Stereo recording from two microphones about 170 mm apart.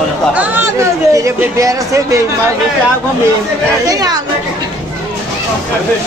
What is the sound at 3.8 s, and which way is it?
Speech, 20° right (ahead or behind).